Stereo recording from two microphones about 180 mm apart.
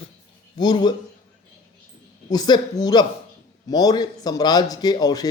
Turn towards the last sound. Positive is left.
turn(degrees=20)  # may be behind; listen again after turning